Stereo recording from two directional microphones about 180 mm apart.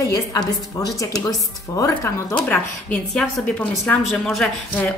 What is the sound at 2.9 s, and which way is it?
A woman's voice, 5° left (ahead or behind).